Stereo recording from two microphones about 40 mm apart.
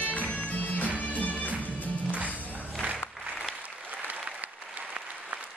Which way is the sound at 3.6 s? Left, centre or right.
Right.